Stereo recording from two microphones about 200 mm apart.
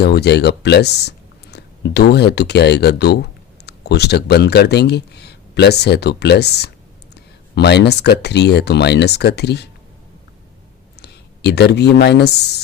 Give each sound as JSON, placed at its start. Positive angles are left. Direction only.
{"t": 0.0, "sound": "speech", "side_deg": 55}
{"t": 11.0, "sound": "speech", "side_deg": 55}